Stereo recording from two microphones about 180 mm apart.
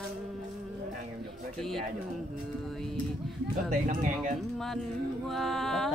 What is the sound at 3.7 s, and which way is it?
Speech, 45° right (ahead or behind).